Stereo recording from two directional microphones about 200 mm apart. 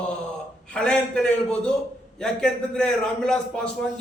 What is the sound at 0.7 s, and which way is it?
A man's voice, 5° left (ahead or behind).